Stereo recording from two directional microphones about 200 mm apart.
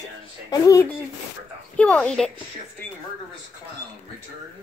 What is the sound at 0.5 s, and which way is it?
Speech, 15° left (ahead or behind).